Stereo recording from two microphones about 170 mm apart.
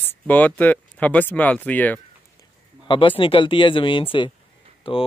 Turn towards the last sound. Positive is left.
turn(degrees=30)  # may be behind; listen again after turning